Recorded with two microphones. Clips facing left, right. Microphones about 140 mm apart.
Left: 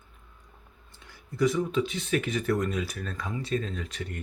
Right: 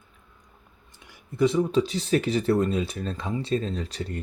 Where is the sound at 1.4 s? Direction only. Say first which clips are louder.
Right 4 dB; 30° right (ahead or behind).